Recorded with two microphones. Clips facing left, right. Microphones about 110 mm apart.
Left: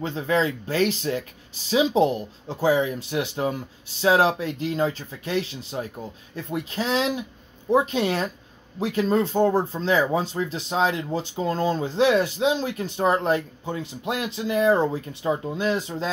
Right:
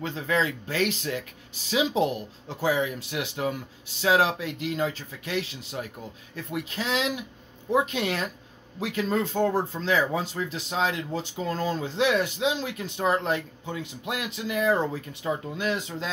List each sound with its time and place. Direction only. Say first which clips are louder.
0.0 s speech: left 3 dB; 30° left (ahead or behind)